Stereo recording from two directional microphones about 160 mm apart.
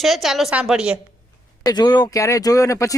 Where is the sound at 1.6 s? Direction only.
25° left (ahead or behind).